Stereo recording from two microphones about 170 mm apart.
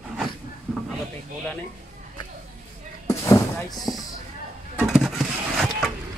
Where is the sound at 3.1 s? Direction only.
15° left (ahead or behind).